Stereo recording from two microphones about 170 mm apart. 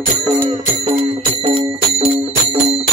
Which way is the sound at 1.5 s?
35° right (ahead or behind).